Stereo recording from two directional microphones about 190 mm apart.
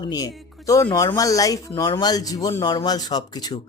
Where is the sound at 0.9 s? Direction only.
15° left (ahead or behind).